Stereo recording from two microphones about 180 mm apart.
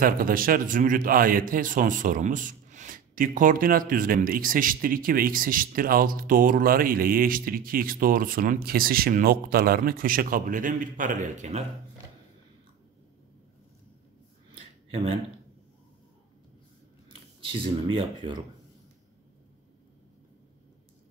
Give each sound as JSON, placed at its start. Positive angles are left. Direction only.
{"t": 0.0, "sound": "a man's voice", "side_deg": -50}
{"t": 14.9, "sound": "speech", "side_deg": -30}
{"t": 17.4, "sound": "speech", "side_deg": -30}